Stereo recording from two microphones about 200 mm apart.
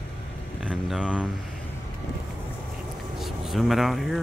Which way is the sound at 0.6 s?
5° right (ahead or behind).